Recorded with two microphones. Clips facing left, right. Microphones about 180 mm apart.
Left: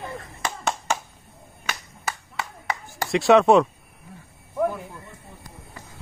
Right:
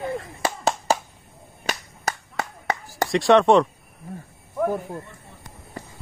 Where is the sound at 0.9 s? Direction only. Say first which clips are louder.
Right 6 dB; 35° right (ahead or behind).